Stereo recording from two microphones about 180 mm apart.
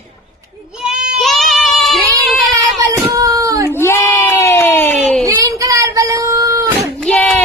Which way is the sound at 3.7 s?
15° left (ahead or behind).